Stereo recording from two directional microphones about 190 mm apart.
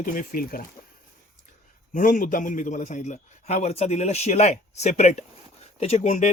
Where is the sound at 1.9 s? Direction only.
45° left (ahead or behind).